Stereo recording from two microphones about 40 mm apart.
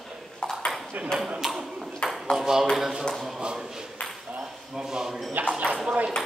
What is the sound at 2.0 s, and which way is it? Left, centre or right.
Ping, left.